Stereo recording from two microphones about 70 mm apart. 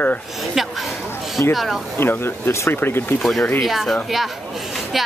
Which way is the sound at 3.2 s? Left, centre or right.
Centre.